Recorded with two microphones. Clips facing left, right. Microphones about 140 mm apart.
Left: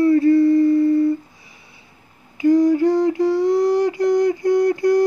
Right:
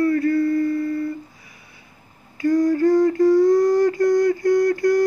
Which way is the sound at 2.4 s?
20° left (ahead or behind).